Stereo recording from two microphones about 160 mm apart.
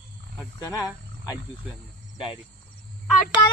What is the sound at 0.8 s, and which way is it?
Wild animals, 5° right (ahead or behind).